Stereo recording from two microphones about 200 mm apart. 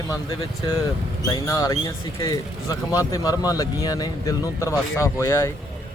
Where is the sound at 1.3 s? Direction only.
20° left (ahead or behind).